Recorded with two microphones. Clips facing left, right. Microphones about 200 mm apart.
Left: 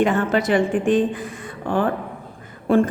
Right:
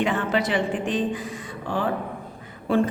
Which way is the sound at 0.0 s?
45° left (ahead or behind).